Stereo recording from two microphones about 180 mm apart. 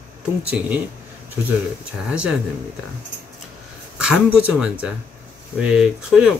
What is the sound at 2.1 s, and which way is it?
Speech, 5° right (ahead or behind).